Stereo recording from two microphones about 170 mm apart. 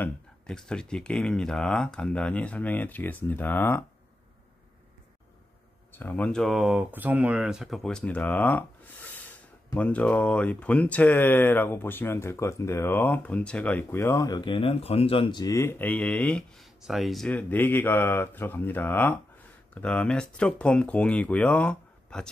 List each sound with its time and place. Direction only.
0.0 s speech: 5° left (ahead or behind)
5.9 s speech: 10° left (ahead or behind)